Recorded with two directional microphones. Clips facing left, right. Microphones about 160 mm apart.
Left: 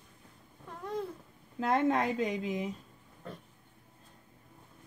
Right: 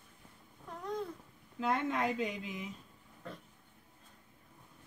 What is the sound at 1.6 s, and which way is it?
A woman's voice, 40° left (ahead or behind).